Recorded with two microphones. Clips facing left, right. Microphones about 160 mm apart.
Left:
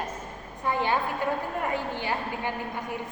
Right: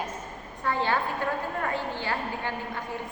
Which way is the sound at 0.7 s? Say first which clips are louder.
Left 1 dB; 15° left (ahead or behind).